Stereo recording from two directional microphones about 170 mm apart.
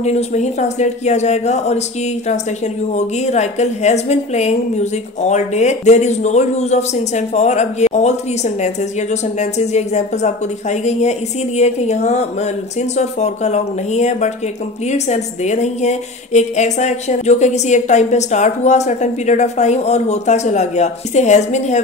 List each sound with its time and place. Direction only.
0.0 s a woman's voice: 40° left (ahead or behind)
2.9 s a woman's voice: 40° left (ahead or behind)